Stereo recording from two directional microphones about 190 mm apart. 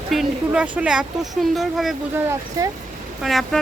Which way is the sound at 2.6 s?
15° right (ahead or behind).